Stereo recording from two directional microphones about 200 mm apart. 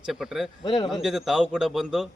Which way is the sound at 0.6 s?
20° left (ahead or behind).